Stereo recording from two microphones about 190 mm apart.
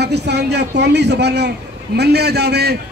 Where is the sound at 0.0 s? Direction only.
60° right (ahead or behind).